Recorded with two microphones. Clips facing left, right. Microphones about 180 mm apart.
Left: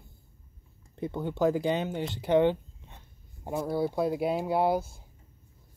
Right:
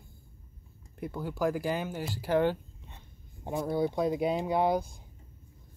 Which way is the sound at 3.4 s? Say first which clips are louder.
Even; 5° left (ahead or behind).